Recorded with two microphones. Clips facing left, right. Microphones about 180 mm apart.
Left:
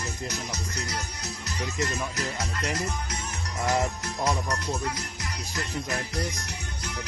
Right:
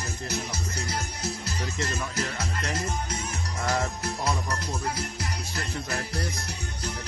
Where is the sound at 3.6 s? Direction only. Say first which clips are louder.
Left 2 dB; 15° left (ahead or behind).